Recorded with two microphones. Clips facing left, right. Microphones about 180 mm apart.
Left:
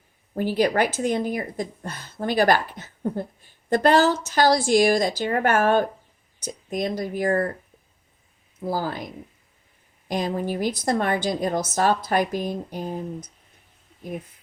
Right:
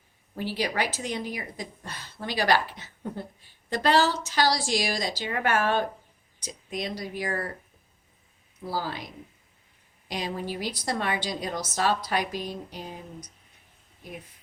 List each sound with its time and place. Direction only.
0.3 s speech: 50° left (ahead or behind)
8.6 s speech: 50° left (ahead or behind)
10.1 s speech: 50° left (ahead or behind)